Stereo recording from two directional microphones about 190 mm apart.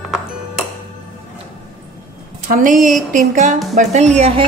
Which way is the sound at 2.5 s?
45° right (ahead or behind).